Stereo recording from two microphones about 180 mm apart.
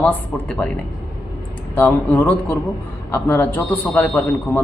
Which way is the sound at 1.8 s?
10° left (ahead or behind).